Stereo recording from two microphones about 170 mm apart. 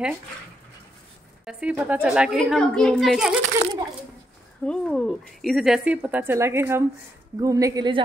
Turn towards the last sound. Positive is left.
turn(degrees=-25)  # may be behind; listen again after turning